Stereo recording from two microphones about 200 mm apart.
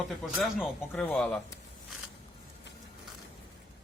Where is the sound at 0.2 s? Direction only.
Centre (ahead or behind).